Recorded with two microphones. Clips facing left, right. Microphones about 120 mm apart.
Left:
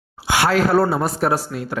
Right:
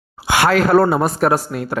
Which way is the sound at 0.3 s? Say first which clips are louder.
Right 3 dB; 60° right (ahead or behind).